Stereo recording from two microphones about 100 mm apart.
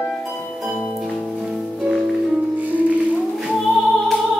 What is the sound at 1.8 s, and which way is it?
Music, 5° right (ahead or behind).